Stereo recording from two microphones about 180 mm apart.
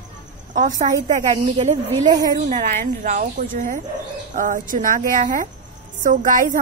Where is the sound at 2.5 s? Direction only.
45° right (ahead or behind).